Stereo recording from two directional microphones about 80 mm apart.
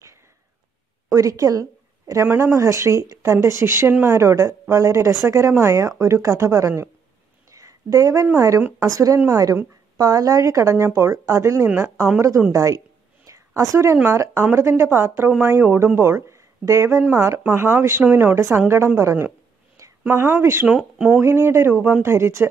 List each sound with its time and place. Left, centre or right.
1.1 s a woman's voice: right
7.5 s a sound: right
8.4 s a woman's voice: right
13.3 s a sound: right
14.0 s a woman's voice: right
17.4 s a woman's voice: right
20.6 s speech: centre
21.2 s a woman's voice: right